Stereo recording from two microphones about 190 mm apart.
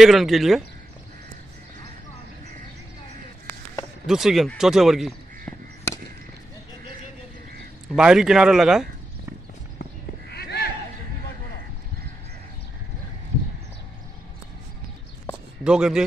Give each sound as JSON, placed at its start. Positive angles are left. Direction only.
{"t": 0.0, "sound": "speech", "side_deg": 0}
{"t": 4.1, "sound": "speech", "side_deg": 0}
{"t": 7.9, "sound": "speech", "side_deg": -5}
{"t": 10.3, "sound": "a sound", "side_deg": 55}
{"t": 15.6, "sound": "speech", "side_deg": -5}